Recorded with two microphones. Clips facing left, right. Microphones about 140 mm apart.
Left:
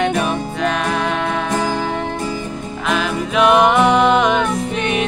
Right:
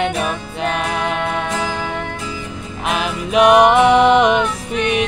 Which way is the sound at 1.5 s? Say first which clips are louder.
Left 3 dB; 45° left (ahead or behind).